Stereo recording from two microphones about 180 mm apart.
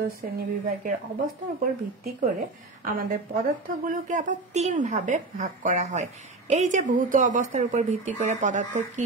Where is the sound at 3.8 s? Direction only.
45° right (ahead or behind).